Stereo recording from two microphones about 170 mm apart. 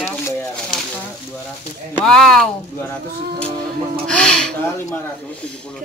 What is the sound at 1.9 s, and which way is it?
Speech, 5° left (ahead or behind).